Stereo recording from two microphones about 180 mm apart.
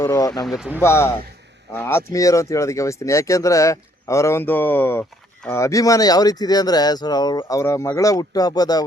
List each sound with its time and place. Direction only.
0.0 s speech: 20° left (ahead or behind)